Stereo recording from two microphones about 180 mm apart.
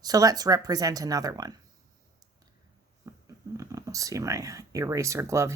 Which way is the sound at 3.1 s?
15° right (ahead or behind).